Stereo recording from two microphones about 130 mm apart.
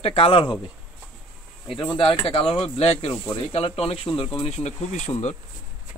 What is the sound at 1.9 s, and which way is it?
Speech, 40° left (ahead or behind).